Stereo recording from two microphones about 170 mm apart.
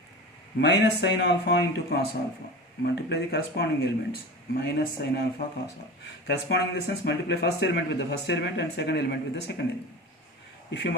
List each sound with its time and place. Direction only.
0.6 s speech: 85° left; by 5.2 s 65° left (ahead or behind)
6.2 s speech: 75° left (ahead or behind)
10.7 s speech: 90° left